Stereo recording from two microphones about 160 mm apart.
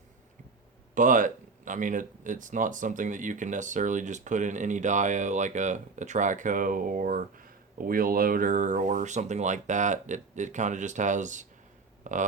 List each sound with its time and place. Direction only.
0.9 s speech: 55° right (ahead or behind)